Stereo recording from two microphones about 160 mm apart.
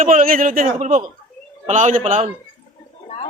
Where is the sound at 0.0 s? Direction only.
60° right (ahead or behind).